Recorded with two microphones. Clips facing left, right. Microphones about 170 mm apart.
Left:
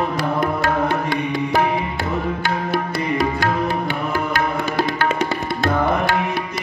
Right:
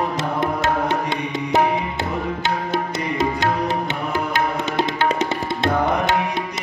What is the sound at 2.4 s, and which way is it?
Music, 20° right (ahead or behind).